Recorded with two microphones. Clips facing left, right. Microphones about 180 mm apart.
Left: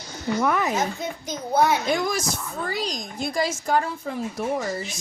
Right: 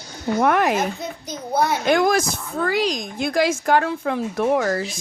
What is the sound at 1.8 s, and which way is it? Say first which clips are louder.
Speech: right 6 dB; 65° right (ahead or behind).